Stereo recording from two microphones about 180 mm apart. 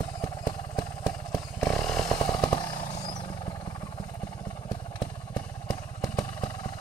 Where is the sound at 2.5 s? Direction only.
25° left (ahead or behind).